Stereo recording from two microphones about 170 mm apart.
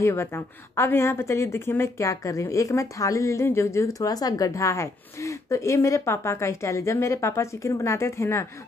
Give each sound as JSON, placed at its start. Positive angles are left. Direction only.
{"t": 0.0, "sound": "speech", "side_deg": 15}